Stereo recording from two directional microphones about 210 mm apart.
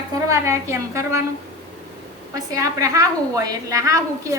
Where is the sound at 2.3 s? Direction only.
15° right (ahead or behind).